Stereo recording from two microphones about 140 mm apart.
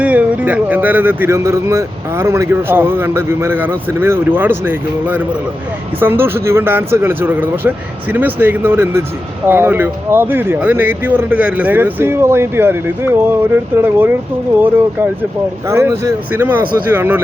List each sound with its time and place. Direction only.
0.0 s speech: 10° right (ahead or behind)
15.6 s speech: 20° right (ahead or behind)